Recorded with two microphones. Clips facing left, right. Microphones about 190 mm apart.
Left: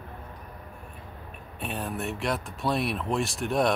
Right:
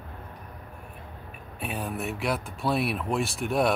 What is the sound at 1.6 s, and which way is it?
Speech, centre (ahead or behind).